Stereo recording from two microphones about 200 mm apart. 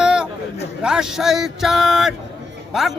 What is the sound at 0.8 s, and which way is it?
Speech, 5° right (ahead or behind).